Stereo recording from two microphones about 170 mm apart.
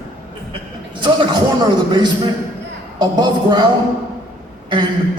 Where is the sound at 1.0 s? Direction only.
30° right (ahead or behind).